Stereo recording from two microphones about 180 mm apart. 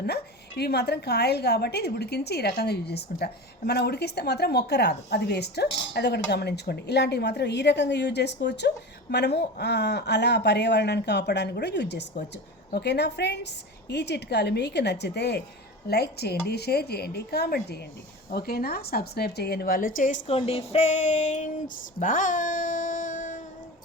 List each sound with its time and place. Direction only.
0.0 s a woman's voice: 65° left (ahead or behind); by 20.3 s 45° left (ahead or behind)
20.3 s speech: 35° left (ahead or behind)
21.9 s a sound: 45° left (ahead or behind)